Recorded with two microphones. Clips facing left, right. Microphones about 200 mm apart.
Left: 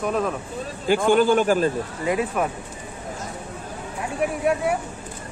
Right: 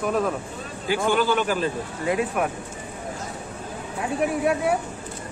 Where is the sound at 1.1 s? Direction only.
45° left (ahead or behind).